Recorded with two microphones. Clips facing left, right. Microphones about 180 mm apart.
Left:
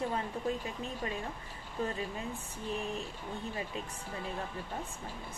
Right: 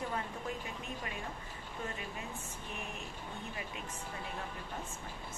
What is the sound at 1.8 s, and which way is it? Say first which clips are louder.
Speech: left 7 dB; 35° left (ahead or behind).